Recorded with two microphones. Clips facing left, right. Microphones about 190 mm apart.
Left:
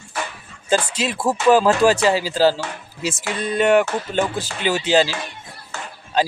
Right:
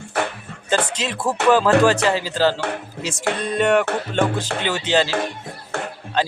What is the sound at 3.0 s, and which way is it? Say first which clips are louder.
Speech: left 2 dB; 5° left (ahead or behind).